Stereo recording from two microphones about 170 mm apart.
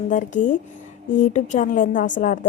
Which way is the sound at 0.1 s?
50° left (ahead or behind).